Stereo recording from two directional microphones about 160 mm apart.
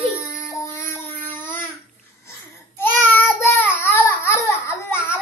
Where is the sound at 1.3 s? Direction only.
15° left (ahead or behind).